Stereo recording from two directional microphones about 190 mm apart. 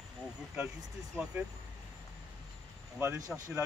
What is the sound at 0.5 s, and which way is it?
Speech, 5° right (ahead or behind).